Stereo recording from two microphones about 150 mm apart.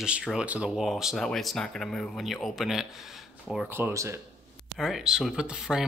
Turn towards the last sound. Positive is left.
turn(degrees=-5)  # may be behind; listen again after turning